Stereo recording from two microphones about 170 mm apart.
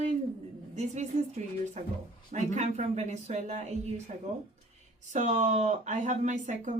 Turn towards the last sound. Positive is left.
turn(degrees=-45)  # may be behind; listen again after turning